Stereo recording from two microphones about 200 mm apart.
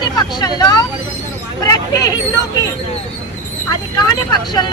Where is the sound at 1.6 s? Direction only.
20° left (ahead or behind).